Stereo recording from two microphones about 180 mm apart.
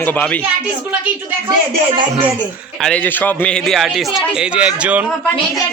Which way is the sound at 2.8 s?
10° left (ahead or behind).